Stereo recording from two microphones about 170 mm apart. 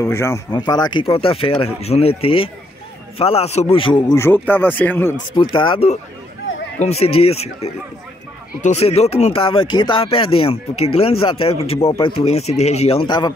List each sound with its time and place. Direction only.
0.0 s speech: 15° left (ahead or behind); by 4.0 s 30° left (ahead or behind)
4.1 s speech: 15° left (ahead or behind)
5.3 s speech: 30° left (ahead or behind)